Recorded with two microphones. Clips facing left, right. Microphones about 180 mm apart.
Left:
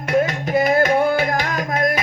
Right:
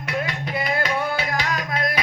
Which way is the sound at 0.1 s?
45° left (ahead or behind).